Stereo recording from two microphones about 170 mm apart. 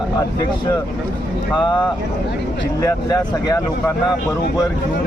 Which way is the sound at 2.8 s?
20° left (ahead or behind).